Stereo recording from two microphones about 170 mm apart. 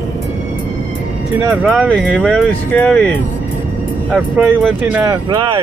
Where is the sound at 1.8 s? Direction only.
5° left (ahead or behind).